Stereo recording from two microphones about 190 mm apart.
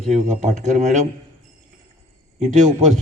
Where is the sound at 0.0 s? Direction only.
40° right (ahead or behind).